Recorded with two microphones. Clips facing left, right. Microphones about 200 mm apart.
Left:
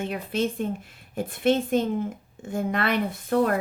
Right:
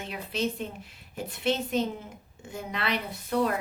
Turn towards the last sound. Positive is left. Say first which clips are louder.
# left 4 dB
turn(degrees=50)  # may be behind; listen again after turning